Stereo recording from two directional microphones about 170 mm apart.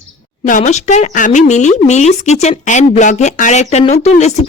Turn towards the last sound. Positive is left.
turn(degrees=40)  # may be behind; listen again after turning